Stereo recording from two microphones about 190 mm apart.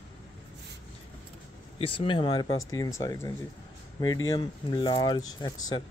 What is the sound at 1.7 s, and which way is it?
Speech, 30° left (ahead or behind).